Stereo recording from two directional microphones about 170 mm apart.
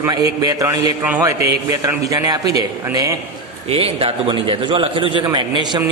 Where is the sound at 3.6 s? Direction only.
35° right (ahead or behind).